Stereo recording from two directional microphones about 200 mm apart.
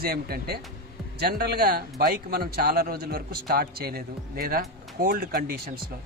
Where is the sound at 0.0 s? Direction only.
50° right (ahead or behind).